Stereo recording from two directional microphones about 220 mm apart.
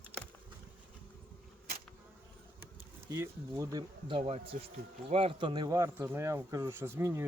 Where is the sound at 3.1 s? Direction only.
15° right (ahead or behind).